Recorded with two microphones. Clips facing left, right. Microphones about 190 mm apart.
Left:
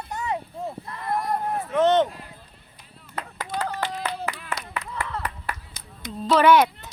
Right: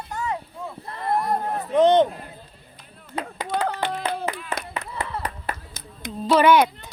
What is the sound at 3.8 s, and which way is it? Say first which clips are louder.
Clapping: right 3 dB; 55° right (ahead or behind).